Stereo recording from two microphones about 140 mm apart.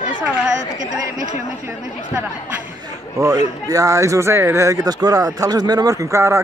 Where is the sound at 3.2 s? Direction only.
25° right (ahead or behind).